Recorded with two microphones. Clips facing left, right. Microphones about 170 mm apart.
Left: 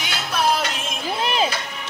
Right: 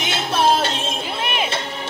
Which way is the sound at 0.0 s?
25° right (ahead or behind).